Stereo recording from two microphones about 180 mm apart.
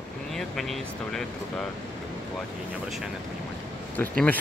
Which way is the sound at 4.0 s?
10° left (ahead or behind).